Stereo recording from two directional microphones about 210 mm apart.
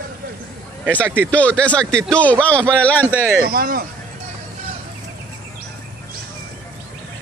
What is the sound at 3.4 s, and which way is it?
Speech, 45° right (ahead or behind).